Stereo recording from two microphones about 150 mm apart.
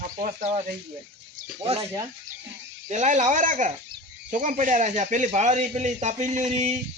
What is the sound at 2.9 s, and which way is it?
Speech, 50° right (ahead or behind).